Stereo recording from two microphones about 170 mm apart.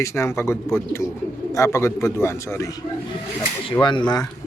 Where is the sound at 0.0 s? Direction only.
15° left (ahead or behind).